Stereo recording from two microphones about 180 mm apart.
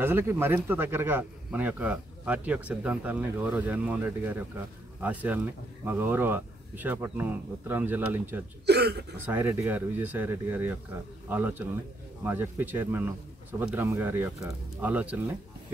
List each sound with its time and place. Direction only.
0.0 s speech: 15° right (ahead or behind)
8.6 s speech: 65° right (ahead or behind)
9.2 s speech: 10° right (ahead or behind)